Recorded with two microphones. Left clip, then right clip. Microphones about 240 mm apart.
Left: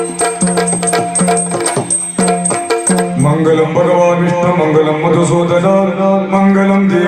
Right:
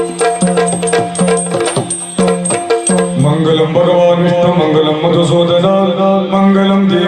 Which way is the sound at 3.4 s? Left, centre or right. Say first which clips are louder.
Even; right.